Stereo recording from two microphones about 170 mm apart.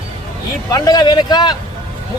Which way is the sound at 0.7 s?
25° left (ahead or behind).